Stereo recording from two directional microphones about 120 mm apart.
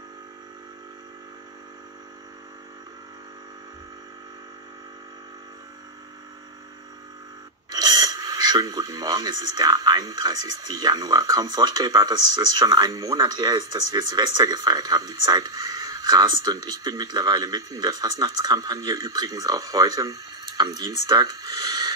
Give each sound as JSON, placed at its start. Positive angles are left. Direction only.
{"t": 7.7, "sound": "speech", "side_deg": -35}